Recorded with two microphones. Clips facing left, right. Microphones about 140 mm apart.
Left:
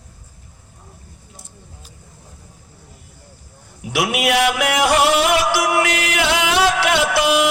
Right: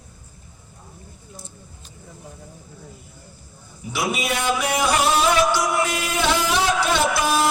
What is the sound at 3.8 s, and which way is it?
Music, 80° left.